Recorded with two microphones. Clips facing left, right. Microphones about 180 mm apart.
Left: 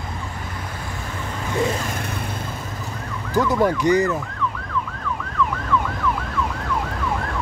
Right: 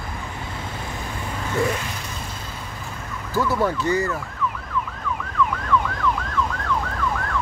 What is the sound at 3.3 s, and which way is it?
Speech, 15° left (ahead or behind).